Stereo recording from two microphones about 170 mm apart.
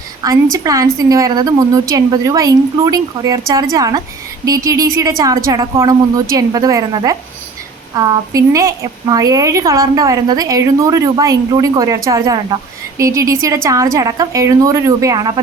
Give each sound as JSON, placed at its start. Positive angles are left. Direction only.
{"t": 0.5, "sound": "a woman's voice", "side_deg": -20}